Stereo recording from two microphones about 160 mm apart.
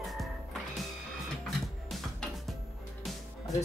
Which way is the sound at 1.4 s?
5° left (ahead or behind).